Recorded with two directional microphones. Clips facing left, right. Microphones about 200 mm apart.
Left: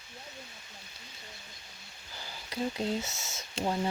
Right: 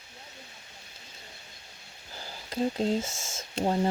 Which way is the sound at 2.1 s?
40° right (ahead or behind).